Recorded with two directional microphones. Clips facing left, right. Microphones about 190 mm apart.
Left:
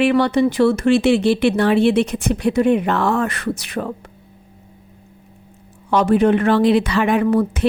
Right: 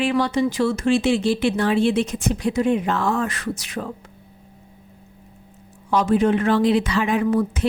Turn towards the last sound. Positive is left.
turn(degrees=65)  # may be behind; listen again after turning